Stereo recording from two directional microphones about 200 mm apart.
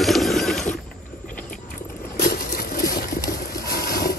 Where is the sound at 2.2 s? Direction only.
50° left (ahead or behind).